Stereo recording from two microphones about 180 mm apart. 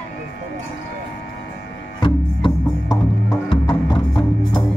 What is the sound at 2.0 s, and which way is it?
Music, 25° left (ahead or behind).